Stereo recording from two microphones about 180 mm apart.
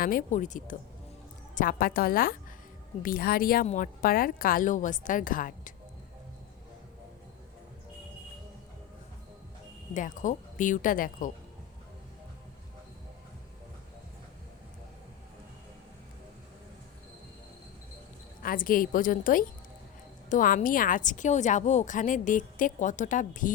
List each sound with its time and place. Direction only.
0.0 s a woman's voice: 50° left (ahead or behind)
9.9 s a woman's voice: 45° left (ahead or behind)
18.4 s a woman's voice: 50° left (ahead or behind)